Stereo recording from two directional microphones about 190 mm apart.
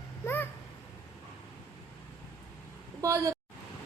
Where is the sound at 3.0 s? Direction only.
15° right (ahead or behind).